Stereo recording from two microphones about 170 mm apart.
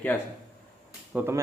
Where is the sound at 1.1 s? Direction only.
15° right (ahead or behind).